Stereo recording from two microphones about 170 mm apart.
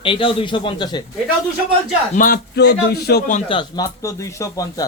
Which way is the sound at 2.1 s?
55° left (ahead or behind).